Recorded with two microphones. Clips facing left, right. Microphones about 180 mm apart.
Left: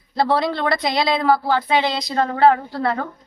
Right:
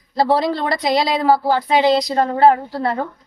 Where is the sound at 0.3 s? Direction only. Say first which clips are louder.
Right 1 dB; 35° right (ahead or behind).